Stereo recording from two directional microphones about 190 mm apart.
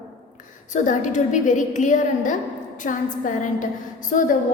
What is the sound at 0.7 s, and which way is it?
A woman's voice, 40° left (ahead or behind).